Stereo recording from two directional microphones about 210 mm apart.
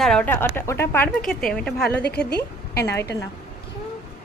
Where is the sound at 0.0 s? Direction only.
5° left (ahead or behind).